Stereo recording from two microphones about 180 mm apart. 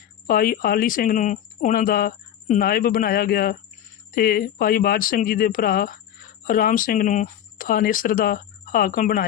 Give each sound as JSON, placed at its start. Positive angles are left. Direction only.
{"t": 0.3, "sound": "speech", "side_deg": 55}